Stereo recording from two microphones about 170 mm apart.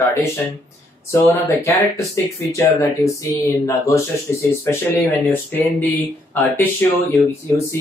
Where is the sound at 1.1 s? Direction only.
15° left (ahead or behind).